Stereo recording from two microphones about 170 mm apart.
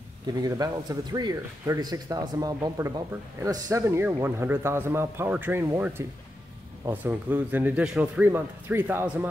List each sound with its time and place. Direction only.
0.4 s speech: 20° right (ahead or behind)